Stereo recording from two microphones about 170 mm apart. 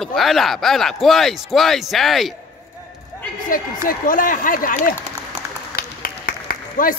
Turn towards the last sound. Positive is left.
turn(degrees=55)  # may be behind; listen again after turning